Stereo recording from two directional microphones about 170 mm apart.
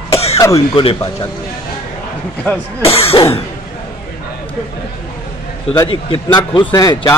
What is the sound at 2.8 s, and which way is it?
Speech, 35° left (ahead or behind).